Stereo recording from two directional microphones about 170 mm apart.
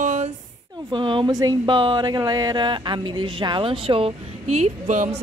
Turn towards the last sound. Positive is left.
turn(degrees=-45)  # may be behind; listen again after turning